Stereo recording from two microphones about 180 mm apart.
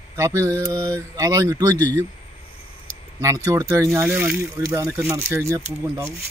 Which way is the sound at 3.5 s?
20° right (ahead or behind).